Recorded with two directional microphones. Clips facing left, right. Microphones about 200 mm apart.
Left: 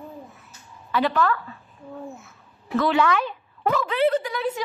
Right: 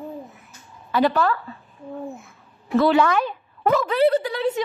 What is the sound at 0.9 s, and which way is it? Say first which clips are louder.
Speech: right 2 dB; 35° right (ahead or behind).